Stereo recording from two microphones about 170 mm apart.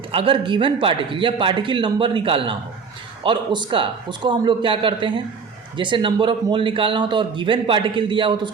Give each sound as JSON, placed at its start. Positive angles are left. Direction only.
{"t": 0.1, "sound": "speech", "side_deg": -30}